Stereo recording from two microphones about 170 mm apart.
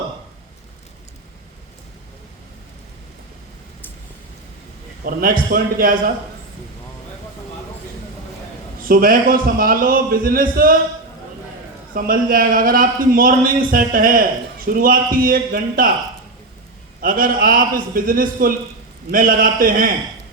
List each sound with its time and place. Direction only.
5.0 s a man's voice: 55° right (ahead or behind)
8.8 s a man's voice: 55° right (ahead or behind)
11.9 s a man's voice: 55° right (ahead or behind)
17.0 s a man's voice: 55° right (ahead or behind)